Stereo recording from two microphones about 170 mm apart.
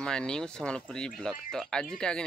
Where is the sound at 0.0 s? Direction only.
5° left (ahead or behind).